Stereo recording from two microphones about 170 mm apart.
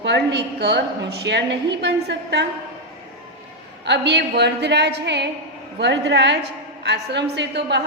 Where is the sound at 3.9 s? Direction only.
85° right.